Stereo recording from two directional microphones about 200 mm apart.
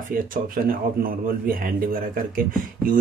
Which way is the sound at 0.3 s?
45° right (ahead or behind).